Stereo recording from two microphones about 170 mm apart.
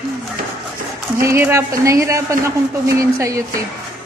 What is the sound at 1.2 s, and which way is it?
Speech, 15° right (ahead or behind).